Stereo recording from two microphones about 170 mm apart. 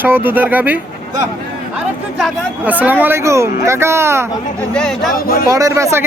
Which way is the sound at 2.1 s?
5° right (ahead or behind).